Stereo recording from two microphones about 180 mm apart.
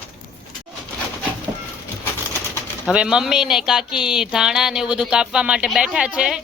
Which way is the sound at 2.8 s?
5° right (ahead or behind).